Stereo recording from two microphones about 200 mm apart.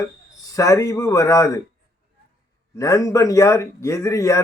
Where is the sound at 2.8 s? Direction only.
15° left (ahead or behind).